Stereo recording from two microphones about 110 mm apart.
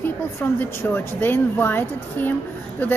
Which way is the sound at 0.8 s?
20° left (ahead or behind).